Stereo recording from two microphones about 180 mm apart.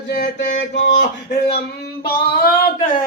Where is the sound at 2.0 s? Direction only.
55° left (ahead or behind).